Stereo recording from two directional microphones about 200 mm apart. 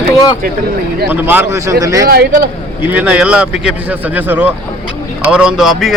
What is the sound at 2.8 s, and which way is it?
Speech, 10° right (ahead or behind).